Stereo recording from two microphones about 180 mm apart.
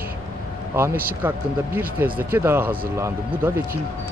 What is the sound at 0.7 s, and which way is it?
A man's voice, 15° right (ahead or behind).